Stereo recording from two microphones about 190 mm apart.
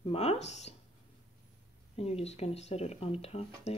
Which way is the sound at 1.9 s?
35° left (ahead or behind).